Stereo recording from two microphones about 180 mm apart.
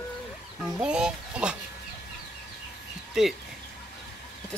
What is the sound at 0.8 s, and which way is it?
Speech, 5° right (ahead or behind).